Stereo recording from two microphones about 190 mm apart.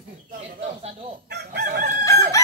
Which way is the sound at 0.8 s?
30° right (ahead or behind).